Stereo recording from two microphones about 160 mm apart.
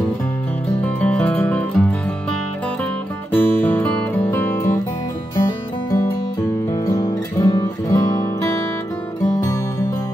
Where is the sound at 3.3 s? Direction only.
10° left (ahead or behind).